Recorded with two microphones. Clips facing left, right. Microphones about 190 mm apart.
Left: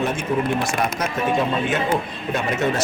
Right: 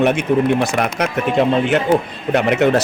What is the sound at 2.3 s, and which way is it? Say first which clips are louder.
Speech: right 8 dB; 70° right (ahead or behind).